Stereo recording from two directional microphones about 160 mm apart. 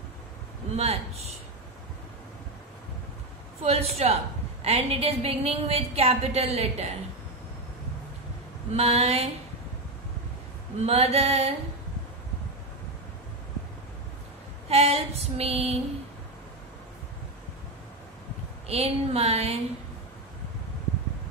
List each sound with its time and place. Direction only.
0.7 s a woman's voice: 40° right (ahead or behind)
3.6 s a woman's voice: 40° right (ahead or behind)
8.7 s a woman's voice: 40° right (ahead or behind)
10.8 s a woman's voice: 40° right (ahead or behind)
14.7 s a woman's voice: 40° right (ahead or behind)
18.7 s a woman's voice: 40° right (ahead or behind)